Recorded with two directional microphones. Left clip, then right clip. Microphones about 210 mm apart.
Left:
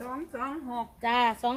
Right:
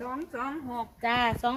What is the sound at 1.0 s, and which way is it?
Speech, 5° left (ahead or behind).